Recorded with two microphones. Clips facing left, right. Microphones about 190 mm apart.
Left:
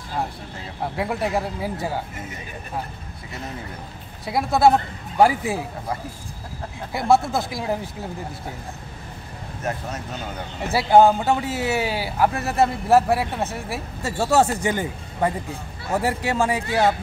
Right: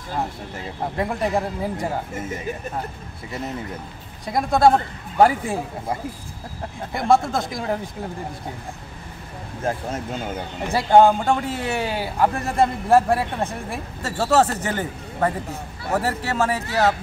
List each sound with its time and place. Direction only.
0.9 s speech: 5° left (ahead or behind)
4.3 s speech: 5° left (ahead or behind)
6.9 s speech: 5° left (ahead or behind)
9.6 s speech: 30° right (ahead or behind)
10.7 s speech: 5° left (ahead or behind)